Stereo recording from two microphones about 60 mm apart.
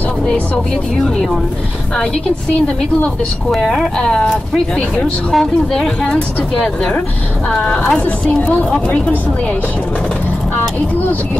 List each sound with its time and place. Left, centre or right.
3.5 s speech: centre
4.7 s a woman's voice: centre